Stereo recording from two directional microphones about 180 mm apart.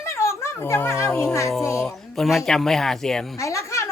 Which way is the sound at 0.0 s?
15° left (ahead or behind).